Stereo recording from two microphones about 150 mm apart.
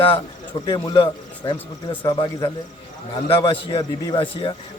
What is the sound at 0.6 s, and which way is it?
Speech, 30° left (ahead or behind).